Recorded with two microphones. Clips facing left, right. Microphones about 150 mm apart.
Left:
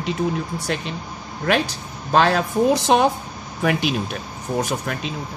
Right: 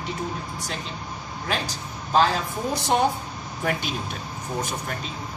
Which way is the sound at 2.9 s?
90° left.